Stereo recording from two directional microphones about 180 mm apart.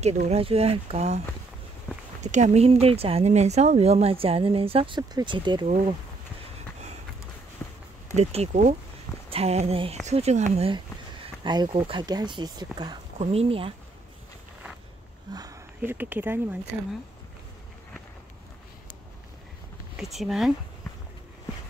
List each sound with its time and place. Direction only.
0.3 s speech: 35° right (ahead or behind)
2.2 s speech: 40° right (ahead or behind); by 5.7 s 25° right (ahead or behind)
7.6 s a sound: 5° left (ahead or behind)
8.2 s speech: 35° right (ahead or behind)
13.2 s speech: 35° right (ahead or behind)
15.3 s speech: 15° right (ahead or behind)
20.0 s speech: centre (ahead or behind)